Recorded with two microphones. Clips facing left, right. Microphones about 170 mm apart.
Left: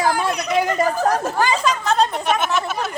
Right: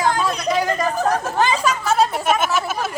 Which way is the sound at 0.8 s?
25° left (ahead or behind).